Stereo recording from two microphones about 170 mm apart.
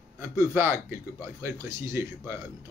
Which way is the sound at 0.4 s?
15° right (ahead or behind).